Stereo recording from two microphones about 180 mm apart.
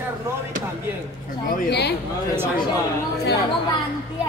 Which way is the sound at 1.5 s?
65° left (ahead or behind).